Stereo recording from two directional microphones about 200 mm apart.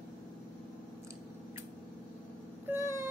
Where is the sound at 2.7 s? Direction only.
10° right (ahead or behind).